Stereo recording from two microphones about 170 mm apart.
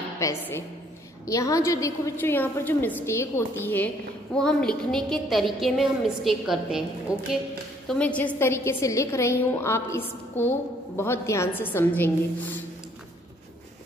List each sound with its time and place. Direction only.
0.2 s a woman's voice: 15° left (ahead or behind); by 7.2 s 5° right (ahead or behind)
7.9 s a woman's voice: 5° left (ahead or behind)